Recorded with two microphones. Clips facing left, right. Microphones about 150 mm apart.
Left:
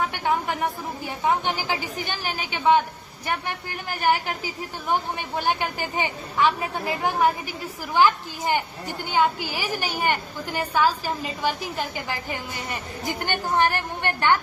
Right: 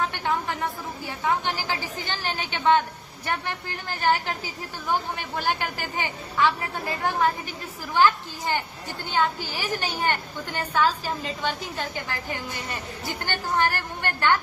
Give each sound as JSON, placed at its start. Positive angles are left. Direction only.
{"t": 0.1, "sound": "a woman's voice", "side_deg": 15}